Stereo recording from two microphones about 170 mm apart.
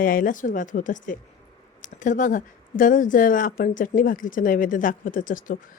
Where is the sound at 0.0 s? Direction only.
55° left (ahead or behind).